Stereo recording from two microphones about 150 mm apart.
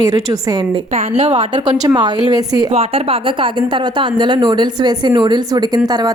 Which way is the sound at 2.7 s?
40° right (ahead or behind).